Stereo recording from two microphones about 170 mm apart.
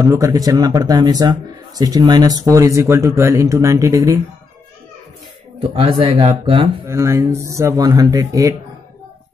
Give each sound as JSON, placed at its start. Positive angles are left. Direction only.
{"t": 0.0, "sound": "speech", "side_deg": -20}
{"t": 5.6, "sound": "speech", "side_deg": -30}
{"t": 6.9, "sound": "speech", "side_deg": -15}